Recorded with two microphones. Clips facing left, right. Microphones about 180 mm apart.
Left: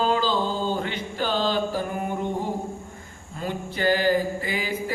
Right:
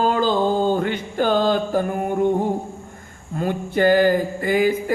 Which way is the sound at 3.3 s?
50° right (ahead or behind).